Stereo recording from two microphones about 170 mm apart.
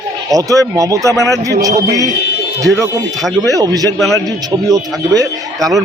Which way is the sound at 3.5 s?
20° right (ahead or behind).